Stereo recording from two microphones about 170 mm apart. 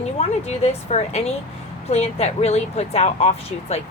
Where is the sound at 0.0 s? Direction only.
40° left (ahead or behind).